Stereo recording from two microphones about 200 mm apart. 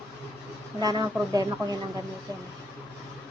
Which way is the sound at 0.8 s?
20° right (ahead or behind).